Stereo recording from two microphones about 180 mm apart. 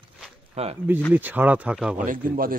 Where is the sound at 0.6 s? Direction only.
35° right (ahead or behind).